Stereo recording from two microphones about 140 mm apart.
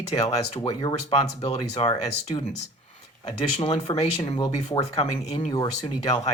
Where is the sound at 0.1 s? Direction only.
45° left (ahead or behind).